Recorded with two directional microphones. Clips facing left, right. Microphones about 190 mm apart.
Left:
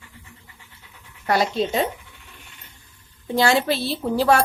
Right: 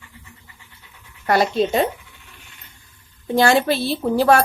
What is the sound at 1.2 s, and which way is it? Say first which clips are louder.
Speech: right 3 dB; 55° right (ahead or behind).